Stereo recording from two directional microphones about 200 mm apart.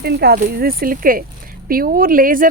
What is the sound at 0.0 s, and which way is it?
A woman's voice, 50° right (ahead or behind).